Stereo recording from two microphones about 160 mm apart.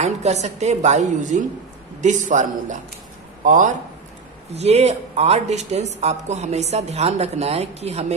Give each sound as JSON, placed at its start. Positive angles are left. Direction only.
{"t": 0.0, "sound": "speech", "side_deg": -45}
{"t": 4.5, "sound": "speech", "side_deg": -40}